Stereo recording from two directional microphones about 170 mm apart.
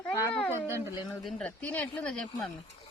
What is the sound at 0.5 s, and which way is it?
Speech, 15° right (ahead or behind).